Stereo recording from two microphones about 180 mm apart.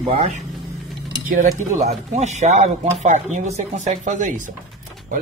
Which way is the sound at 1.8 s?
40° right (ahead or behind).